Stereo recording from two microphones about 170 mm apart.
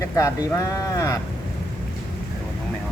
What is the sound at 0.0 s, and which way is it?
Speech, 20° left (ahead or behind).